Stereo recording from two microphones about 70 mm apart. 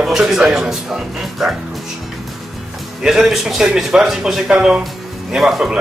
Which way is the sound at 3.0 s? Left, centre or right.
Centre.